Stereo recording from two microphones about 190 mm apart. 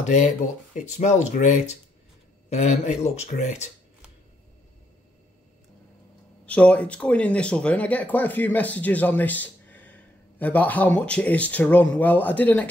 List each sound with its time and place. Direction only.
0.8 s speech: 40° left (ahead or behind)
6.4 s speech: 5° left (ahead or behind)